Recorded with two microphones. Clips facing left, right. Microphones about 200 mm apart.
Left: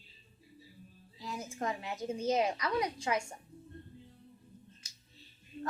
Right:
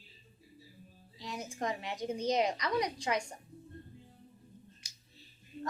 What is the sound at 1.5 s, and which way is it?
Speech, 35° right (ahead or behind).